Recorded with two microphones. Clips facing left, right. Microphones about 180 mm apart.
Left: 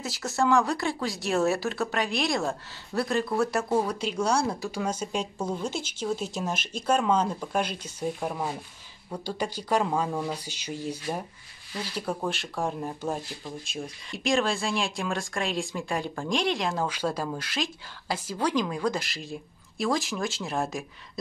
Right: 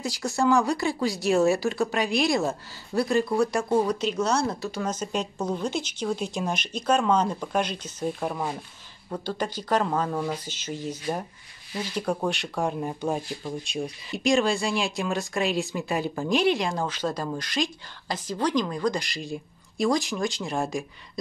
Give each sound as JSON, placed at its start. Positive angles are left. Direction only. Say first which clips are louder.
{"t": 0.0, "sound": "a woman's voice", "louder": "right 2 dB", "side_deg": 0}
{"t": 12.0, "sound": "a woman's voice", "louder": "right 4 dB", "side_deg": 5}